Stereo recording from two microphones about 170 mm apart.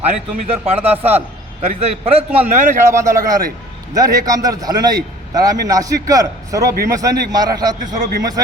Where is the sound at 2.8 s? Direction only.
15° right (ahead or behind).